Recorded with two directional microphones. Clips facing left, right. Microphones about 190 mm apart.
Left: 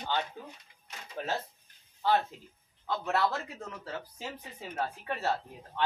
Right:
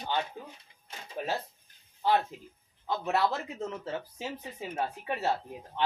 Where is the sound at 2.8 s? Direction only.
15° right (ahead or behind).